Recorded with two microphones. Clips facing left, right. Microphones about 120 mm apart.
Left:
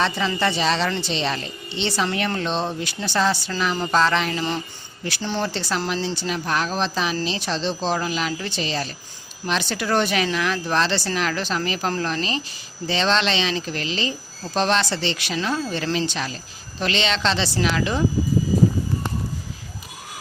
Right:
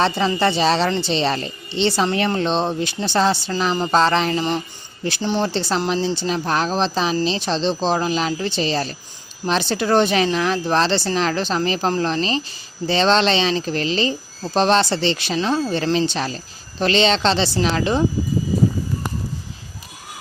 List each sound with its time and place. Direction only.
0.0 s speech: 30° right (ahead or behind)